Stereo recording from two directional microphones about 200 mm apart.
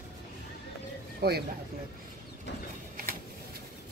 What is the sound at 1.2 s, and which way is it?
Speech, 55° right (ahead or behind).